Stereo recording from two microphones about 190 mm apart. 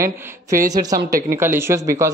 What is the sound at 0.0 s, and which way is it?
A man's voice, 15° right (ahead or behind).